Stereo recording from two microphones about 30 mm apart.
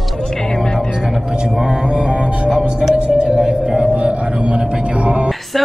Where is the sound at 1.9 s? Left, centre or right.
Right.